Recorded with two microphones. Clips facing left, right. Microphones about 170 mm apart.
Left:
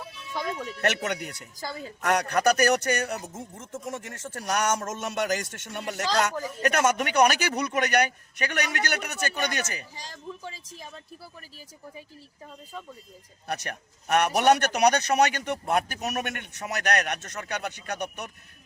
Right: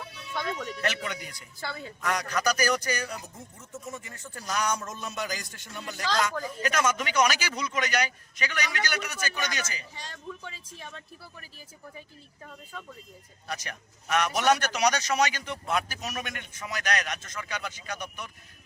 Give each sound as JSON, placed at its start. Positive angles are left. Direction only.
{"t": 0.3, "sound": "speech", "side_deg": 10}
{"t": 0.8, "sound": "a man's voice", "side_deg": 65}
{"t": 3.3, "sound": "a man's voice", "side_deg": 90}
{"t": 10.4, "sound": "speech", "side_deg": 35}
{"t": 13.5, "sound": "a man's voice", "side_deg": 60}